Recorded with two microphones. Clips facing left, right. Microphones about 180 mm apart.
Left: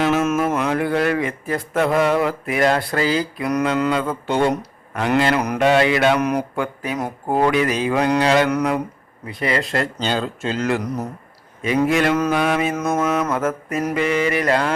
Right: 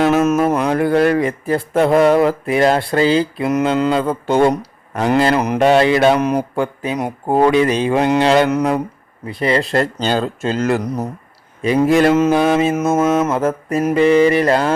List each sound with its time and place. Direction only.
0.0 s speech: 40° right (ahead or behind)
9.2 s mantra: 30° right (ahead or behind)